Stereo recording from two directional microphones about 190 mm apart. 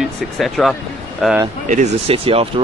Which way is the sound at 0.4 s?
Centre (ahead or behind).